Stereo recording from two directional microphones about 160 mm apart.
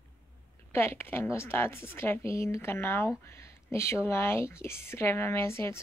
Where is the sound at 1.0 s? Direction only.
15° left (ahead or behind).